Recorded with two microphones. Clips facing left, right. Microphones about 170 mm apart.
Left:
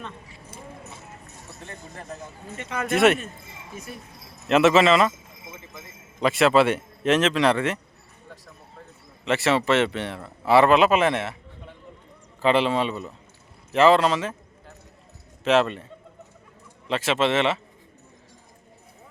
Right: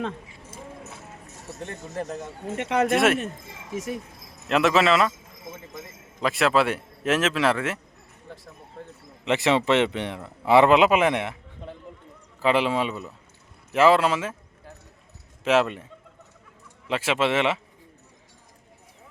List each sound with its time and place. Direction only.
2.2 s speech: 70° right (ahead or behind)
2.9 s a man's voice: centre (ahead or behind)
3.7 s speech: 90° right
4.4 s a man's voice: centre (ahead or behind)
6.1 s a man's voice: centre (ahead or behind)
9.2 s a man's voice: 15° right (ahead or behind)
12.4 s a man's voice: 10° right (ahead or behind)
15.4 s a man's voice: 10° right (ahead or behind)
16.9 s a man's voice: 10° right (ahead or behind)